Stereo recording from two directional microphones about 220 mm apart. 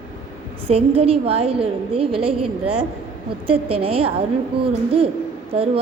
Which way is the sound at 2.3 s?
90° right.